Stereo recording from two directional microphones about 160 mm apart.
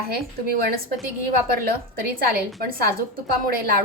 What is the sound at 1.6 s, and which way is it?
Speech, 70° right (ahead or behind).